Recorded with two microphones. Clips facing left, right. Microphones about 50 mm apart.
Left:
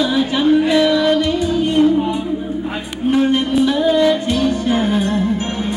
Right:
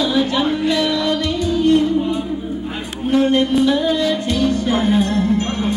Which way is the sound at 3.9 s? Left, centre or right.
Centre.